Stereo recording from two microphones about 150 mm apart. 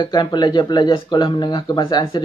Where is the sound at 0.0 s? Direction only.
30° left (ahead or behind).